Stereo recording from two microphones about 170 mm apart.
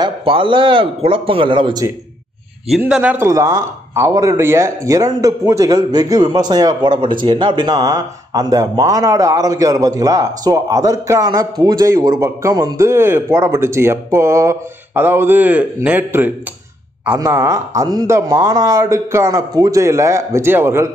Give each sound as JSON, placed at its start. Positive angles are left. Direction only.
{"t": 0.0, "sound": "a man's voice", "side_deg": -30}
{"t": 2.8, "sound": "speech", "side_deg": -10}